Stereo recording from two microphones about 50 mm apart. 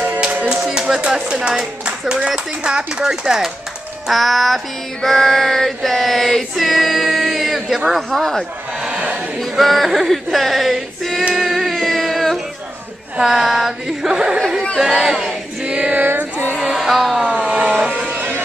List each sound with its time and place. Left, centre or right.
0.2 s music: right
0.7 s speech: centre
4.1 s female singing: centre
11.3 s music: centre
13.2 s speech: centre
15.6 s female singing: centre
16.6 s music: centre
18.1 s music: right